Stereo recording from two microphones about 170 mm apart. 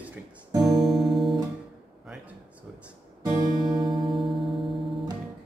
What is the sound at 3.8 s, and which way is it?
Music, 30° right (ahead or behind).